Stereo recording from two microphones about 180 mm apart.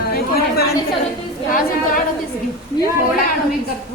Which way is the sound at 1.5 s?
50° left (ahead or behind).